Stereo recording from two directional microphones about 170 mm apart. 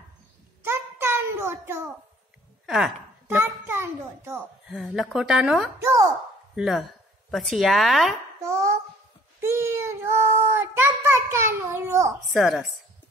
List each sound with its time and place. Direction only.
0.7 s a sound: 15° right (ahead or behind)
2.6 s speech: centre (ahead or behind)
3.3 s a sound: 15° right (ahead or behind)
4.6 s speech: centre (ahead or behind)
5.8 s a woman's voice: 15° right (ahead or behind)
6.5 s speech: centre (ahead or behind)
9.4 s a child's voice: 15° right (ahead or behind)
12.3 s speech: centre (ahead or behind)